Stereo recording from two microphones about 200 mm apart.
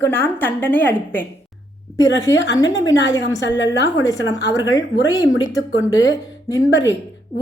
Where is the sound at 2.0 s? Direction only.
65° left (ahead or behind).